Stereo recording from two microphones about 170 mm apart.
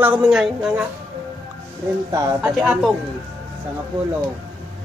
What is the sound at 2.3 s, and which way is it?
Speech, 5° right (ahead or behind).